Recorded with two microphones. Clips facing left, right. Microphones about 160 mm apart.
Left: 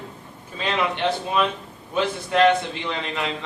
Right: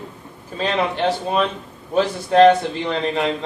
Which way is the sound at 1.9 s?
35° right (ahead or behind).